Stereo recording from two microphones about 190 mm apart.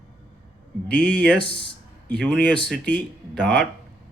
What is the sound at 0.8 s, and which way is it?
A man's voice, 5° left (ahead or behind).